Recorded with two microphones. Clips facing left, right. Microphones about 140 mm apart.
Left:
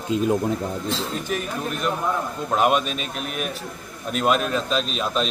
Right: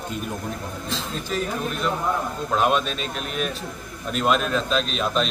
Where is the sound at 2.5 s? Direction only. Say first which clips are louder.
Left 1 dB; 10° left (ahead or behind).